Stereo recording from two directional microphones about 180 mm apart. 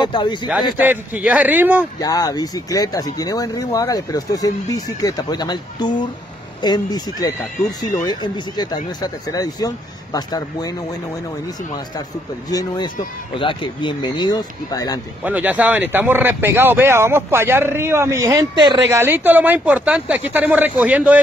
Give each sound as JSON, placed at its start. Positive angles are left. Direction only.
{"t": 0.0, "sound": "speech", "side_deg": 25}
{"t": 0.7, "sound": "speech", "side_deg": -10}
{"t": 2.0, "sound": "speech", "side_deg": 20}
{"t": 12.4, "sound": "speech", "side_deg": 20}
{"t": 15.2, "sound": "speech", "side_deg": -10}
{"t": 18.9, "sound": "speech", "side_deg": -15}